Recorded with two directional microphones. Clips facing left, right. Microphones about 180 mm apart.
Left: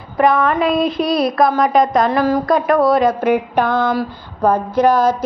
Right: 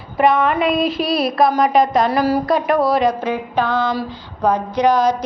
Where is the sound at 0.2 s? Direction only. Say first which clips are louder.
Left 1 dB; 25° right (ahead or behind).